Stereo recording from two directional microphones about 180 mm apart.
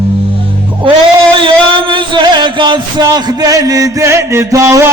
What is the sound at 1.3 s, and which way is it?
Music, 30° right (ahead or behind).